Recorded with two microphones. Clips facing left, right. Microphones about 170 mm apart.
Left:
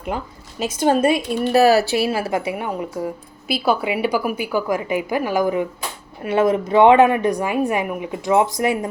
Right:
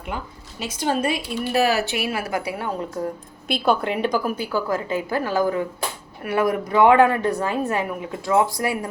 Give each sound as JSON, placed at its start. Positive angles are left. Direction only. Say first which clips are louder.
{"t": 0.1, "sound": "a woman's voice", "louder": "left 4 dB", "side_deg": 40}